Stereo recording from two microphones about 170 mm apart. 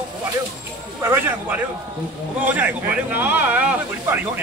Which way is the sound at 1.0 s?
10° right (ahead or behind).